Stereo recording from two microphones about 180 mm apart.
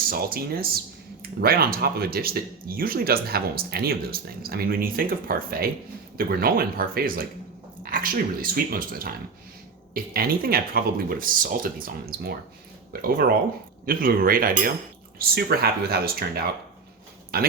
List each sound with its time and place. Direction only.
0.1 s speech: 55° right (ahead or behind)